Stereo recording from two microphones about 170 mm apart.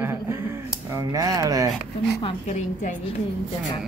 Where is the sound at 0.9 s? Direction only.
20° right (ahead or behind).